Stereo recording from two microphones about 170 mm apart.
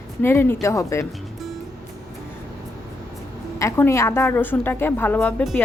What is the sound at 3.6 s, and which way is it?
A woman's voice, 15° left (ahead or behind).